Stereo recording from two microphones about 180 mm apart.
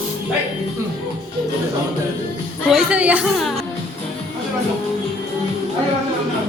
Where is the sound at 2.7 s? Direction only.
5° right (ahead or behind).